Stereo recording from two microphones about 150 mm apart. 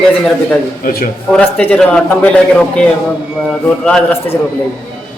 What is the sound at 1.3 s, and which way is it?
A man's voice, 10° left (ahead or behind).